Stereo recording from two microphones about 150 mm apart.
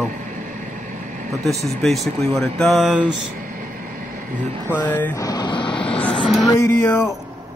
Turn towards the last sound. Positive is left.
turn(degrees=20)  # may be behind; listen again after turning